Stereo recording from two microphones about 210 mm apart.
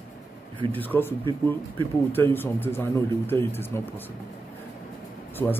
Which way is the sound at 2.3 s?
10° left (ahead or behind).